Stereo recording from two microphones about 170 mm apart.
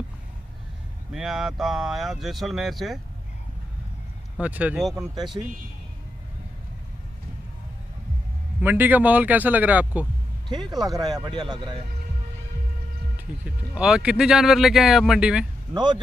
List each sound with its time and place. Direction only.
1.1 s speech: centre (ahead or behind)
4.4 s speech: 10° right (ahead or behind)
8.5 s speech: 10° right (ahead or behind)
10.5 s speech: 25° right (ahead or behind)
13.4 s speech: 5° right (ahead or behind)
15.7 s speech: 25° right (ahead or behind)